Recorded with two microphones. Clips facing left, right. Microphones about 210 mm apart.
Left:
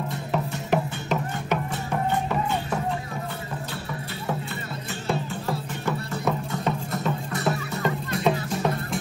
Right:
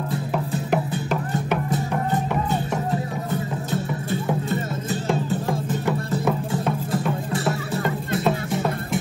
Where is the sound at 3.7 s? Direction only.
45° right (ahead or behind).